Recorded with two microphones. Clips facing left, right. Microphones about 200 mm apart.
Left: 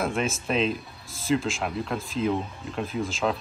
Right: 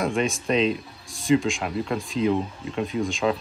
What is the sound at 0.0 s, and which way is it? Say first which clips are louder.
Speech: right 3 dB; centre (ahead or behind).